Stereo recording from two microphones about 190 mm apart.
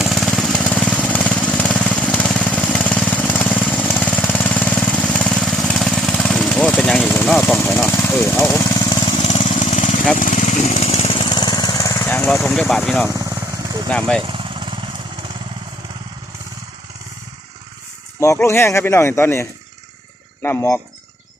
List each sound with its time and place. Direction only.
0.0 s jackhammer: centre (ahead or behind)
7.3 s vehicle: 5° left (ahead or behind)
9.2 s lawn mower: 30° left (ahead or behind); by 13.1 s centre (ahead or behind)
13.1 s vehicle: 20° right (ahead or behind)
18.2 s speech: 15° left (ahead or behind)